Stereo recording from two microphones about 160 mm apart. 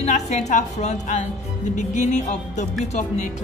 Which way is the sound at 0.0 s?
45° left (ahead or behind).